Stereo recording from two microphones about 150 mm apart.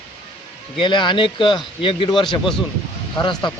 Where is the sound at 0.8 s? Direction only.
30° left (ahead or behind).